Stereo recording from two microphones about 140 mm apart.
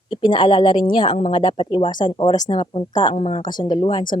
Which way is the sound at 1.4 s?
35° left (ahead or behind).